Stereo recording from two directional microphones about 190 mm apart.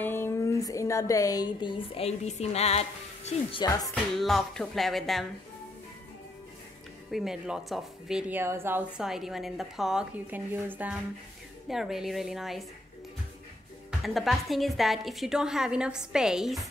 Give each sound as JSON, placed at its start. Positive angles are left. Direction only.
{"t": 0.0, "sound": "speech", "side_deg": 10}
{"t": 3.6, "sound": "speech", "side_deg": 20}
{"t": 3.9, "sound": "speech", "side_deg": 0}
{"t": 7.1, "sound": "speech", "side_deg": 0}
{"t": 13.8, "sound": "speech", "side_deg": 0}